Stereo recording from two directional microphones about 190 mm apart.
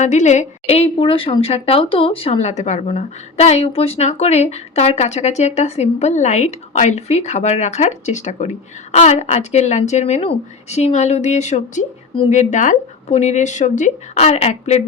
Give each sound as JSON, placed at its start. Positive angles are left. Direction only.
{"t": 0.0, "sound": "a woman's voice", "side_deg": 35}